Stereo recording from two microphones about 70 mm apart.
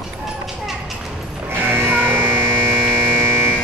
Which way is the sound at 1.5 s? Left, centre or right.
Right.